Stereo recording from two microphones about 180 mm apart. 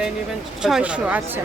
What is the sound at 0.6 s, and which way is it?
Speech, 5° right (ahead or behind).